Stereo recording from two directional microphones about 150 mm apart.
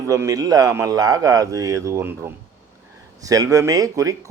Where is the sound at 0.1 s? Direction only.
20° right (ahead or behind).